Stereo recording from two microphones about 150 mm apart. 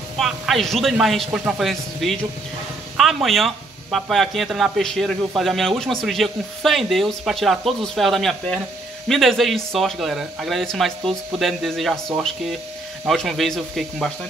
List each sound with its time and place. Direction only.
0.2 s speech: centre (ahead or behind)
13.0 s speech: centre (ahead or behind)